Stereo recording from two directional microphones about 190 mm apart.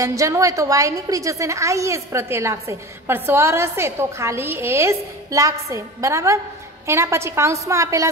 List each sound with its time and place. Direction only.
0.0 s a woman's voice: 15° right (ahead or behind)